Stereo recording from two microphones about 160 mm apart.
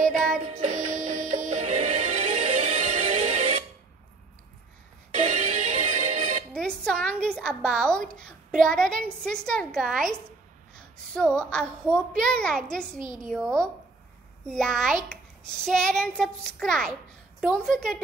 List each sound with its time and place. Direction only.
0.5 s music: 45° right (ahead or behind)
5.1 s music: 45° right (ahead or behind)
6.5 s a sound: 5° left (ahead or behind)
8.5 s a child's voice: 5° left (ahead or behind)
11.1 s a child's voice: 5° left (ahead or behind)